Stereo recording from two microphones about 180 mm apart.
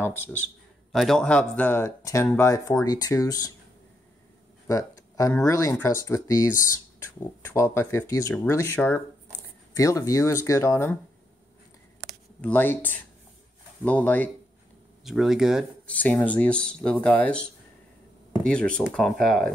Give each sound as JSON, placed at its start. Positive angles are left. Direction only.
{"t": 0.9, "sound": "speech", "side_deg": 0}
{"t": 4.6, "sound": "speech", "side_deg": 20}
{"t": 12.4, "sound": "speech", "side_deg": 10}
{"t": 15.0, "sound": "speech", "side_deg": 0}
{"t": 16.0, "sound": "speech", "side_deg": 10}